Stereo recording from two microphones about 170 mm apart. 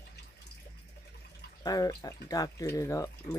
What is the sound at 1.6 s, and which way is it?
Speech, 20° left (ahead or behind).